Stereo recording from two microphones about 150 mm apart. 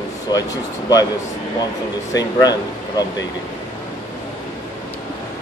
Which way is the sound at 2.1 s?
25° left (ahead or behind).